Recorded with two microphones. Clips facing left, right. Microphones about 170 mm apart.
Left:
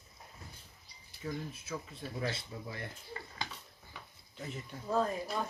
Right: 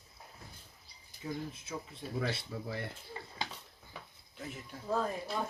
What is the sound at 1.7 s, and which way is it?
Speech, 20° right (ahead or behind).